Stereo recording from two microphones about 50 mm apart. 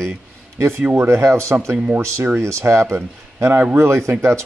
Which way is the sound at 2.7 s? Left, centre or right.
Right.